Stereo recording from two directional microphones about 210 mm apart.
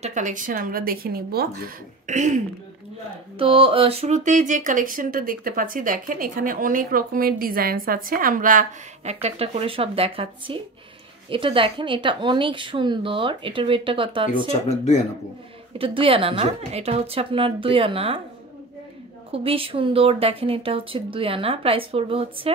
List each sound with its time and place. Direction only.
0.0 s speech: 35° right (ahead or behind)
15.8 s speech: 25° right (ahead or behind)
19.3 s speech: 25° right (ahead or behind)